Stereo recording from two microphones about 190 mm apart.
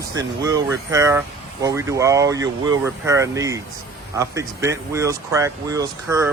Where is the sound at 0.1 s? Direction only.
20° right (ahead or behind).